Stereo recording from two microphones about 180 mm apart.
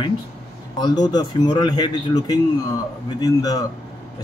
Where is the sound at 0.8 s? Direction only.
20° left (ahead or behind).